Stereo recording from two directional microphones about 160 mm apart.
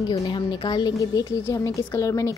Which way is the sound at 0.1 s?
30° left (ahead or behind).